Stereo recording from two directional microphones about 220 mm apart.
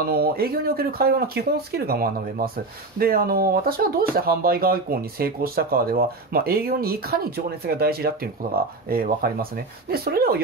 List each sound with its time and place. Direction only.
0.0 s speech: 45° right (ahead or behind)